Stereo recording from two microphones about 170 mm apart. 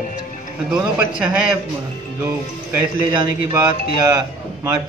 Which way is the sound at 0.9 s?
5° right (ahead or behind).